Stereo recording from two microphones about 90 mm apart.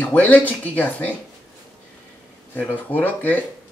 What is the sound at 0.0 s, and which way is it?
Speech, 20° left (ahead or behind).